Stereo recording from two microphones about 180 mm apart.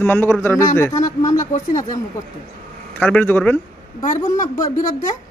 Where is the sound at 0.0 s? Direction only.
10° left (ahead or behind).